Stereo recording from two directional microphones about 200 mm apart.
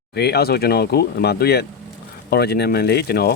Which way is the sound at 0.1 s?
55° left (ahead or behind).